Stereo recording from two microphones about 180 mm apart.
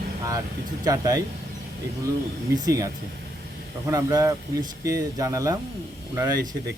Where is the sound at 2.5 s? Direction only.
20° right (ahead or behind).